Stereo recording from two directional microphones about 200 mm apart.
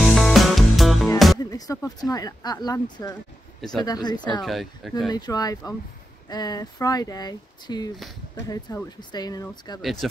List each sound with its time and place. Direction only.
0.0 s music: centre (ahead or behind)
1.4 s speech: 15° left (ahead or behind)
4.4 s speech: centre (ahead or behind)
5.1 s speech: 20° left (ahead or behind)
9.8 s speech: centre (ahead or behind)